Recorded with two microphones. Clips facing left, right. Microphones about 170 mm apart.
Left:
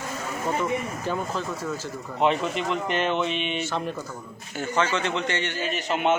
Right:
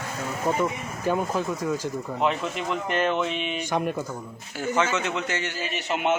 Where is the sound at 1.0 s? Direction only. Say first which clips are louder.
Right 3 dB; 10° right (ahead or behind).